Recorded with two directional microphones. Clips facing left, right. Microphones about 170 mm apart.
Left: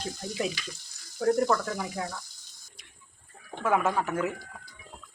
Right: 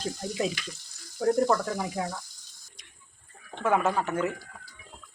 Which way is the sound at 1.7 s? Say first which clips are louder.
Right 2 dB; 20° right (ahead or behind).